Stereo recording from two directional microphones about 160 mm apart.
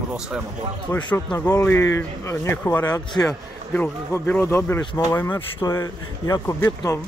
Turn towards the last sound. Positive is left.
turn(degrees=20)  # may be behind; listen again after turning